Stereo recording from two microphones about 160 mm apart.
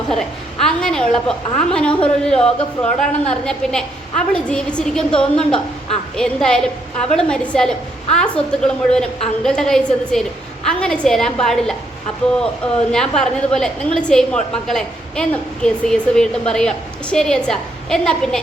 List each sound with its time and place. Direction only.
0.1 s a woman's voice: 5° left (ahead or behind)
12.9 s a woman's voice: 5° left (ahead or behind)